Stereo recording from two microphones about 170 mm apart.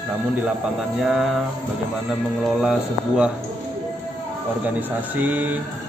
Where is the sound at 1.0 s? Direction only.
5° right (ahead or behind).